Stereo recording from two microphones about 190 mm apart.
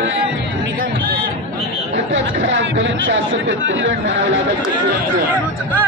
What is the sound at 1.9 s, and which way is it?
Speech, 70° right (ahead or behind).